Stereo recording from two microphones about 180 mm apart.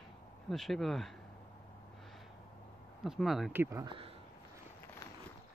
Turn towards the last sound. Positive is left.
turn(degrees=-30)  # may be behind; listen again after turning